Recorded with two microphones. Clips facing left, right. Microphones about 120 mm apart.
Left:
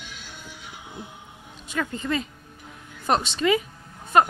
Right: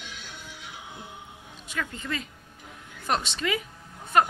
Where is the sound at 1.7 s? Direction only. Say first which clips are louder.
Left 6 dB; 30° left (ahead or behind).